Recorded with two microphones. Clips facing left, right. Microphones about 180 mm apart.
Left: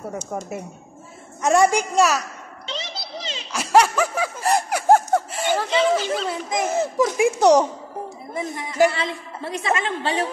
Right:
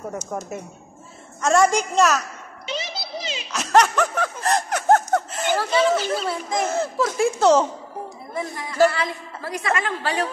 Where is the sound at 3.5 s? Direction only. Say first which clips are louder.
Left 1 dB; 5° left (ahead or behind).